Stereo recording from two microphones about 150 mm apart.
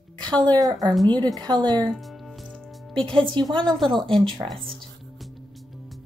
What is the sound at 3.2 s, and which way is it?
Speech, 35° right (ahead or behind).